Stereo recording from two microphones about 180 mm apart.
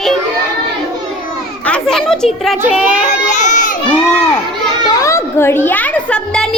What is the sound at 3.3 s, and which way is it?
Crowd, 40° left (ahead or behind).